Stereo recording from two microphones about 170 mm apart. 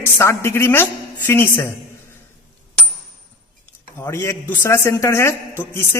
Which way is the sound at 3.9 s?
15° left (ahead or behind).